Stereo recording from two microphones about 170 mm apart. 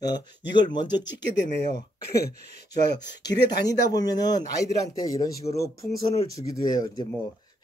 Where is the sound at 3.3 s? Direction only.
85° left.